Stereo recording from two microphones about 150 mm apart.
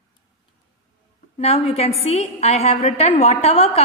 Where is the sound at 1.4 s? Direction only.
45° left (ahead or behind).